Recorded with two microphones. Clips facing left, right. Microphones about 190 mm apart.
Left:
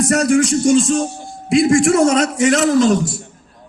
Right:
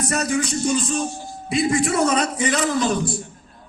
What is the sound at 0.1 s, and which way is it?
A man's voice, 90° left.